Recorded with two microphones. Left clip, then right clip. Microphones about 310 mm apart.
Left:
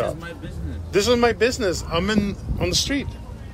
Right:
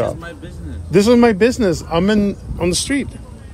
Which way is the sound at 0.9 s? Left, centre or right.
Centre.